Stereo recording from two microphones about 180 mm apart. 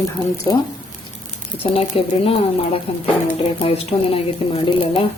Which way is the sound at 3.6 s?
35° left (ahead or behind).